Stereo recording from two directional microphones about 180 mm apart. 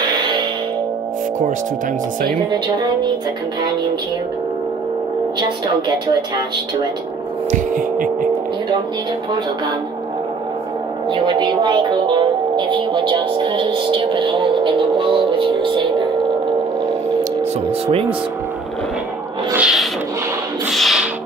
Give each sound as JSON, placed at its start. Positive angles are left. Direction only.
{"t": 2.5, "sound": "speech", "side_deg": -25}
{"t": 7.5, "sound": "a sound", "side_deg": -50}
{"t": 11.1, "sound": "speech", "side_deg": -25}
{"t": 17.2, "sound": "music", "side_deg": -35}
{"t": 19.5, "sound": "a sound", "side_deg": -5}
{"t": 20.7, "sound": "music", "side_deg": 0}